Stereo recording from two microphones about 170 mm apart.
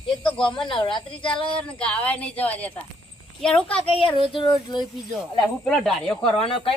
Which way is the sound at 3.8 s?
30° left (ahead or behind).